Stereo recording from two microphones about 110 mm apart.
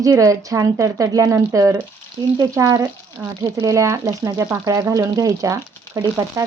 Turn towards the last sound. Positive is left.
turn(degrees=-30)  # may be behind; listen again after turning